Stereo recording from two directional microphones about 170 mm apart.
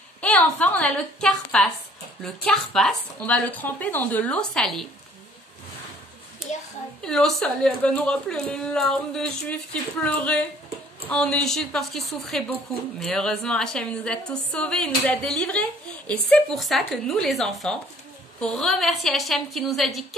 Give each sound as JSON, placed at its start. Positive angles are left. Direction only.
{"t": 0.2, "sound": "speech", "side_deg": 10}
{"t": 6.4, "sound": "a sound", "side_deg": 0}
{"t": 7.0, "sound": "speech", "side_deg": 5}